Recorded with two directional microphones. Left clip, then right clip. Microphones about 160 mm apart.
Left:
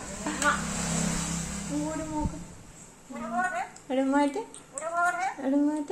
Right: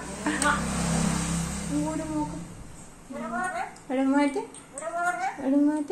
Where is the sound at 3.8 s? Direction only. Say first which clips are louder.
Right 1 dB; 45° left (ahead or behind).